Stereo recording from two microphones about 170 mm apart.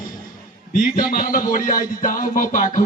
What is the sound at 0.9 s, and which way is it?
Speech, 60° left (ahead or behind).